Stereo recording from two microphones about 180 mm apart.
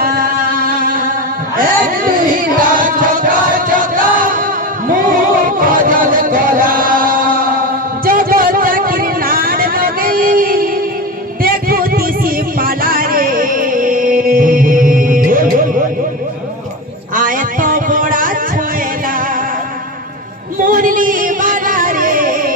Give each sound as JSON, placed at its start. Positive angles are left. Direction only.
{"t": 0.0, "sound": "a sound", "side_deg": -55}
{"t": 1.6, "sound": "singing", "side_deg": -50}
{"t": 4.8, "sound": "music", "side_deg": -50}
{"t": 8.0, "sound": "vehicle", "side_deg": -50}
{"t": 11.4, "sound": "music", "side_deg": -55}
{"t": 17.1, "sound": "a sound", "side_deg": -50}
{"t": 20.5, "sound": "music", "side_deg": -50}